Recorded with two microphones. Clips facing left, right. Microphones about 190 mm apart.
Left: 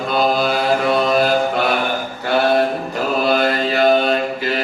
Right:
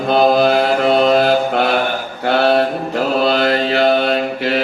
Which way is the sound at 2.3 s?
65° right (ahead or behind).